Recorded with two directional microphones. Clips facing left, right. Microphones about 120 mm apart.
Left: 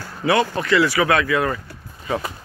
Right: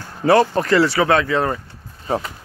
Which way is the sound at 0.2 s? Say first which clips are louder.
Right 5 dB; 40° right (ahead or behind).